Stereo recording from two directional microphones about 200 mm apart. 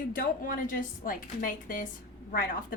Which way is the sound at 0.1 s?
45° left (ahead or behind).